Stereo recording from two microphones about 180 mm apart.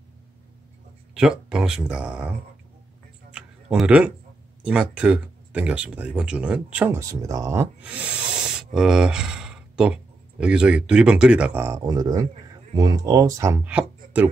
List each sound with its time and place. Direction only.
1.1 s speech: 5° right (ahead or behind)
3.7 s speech: 5° right (ahead or behind)